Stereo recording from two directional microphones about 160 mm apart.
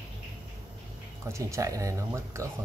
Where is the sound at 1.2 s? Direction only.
20° right (ahead or behind).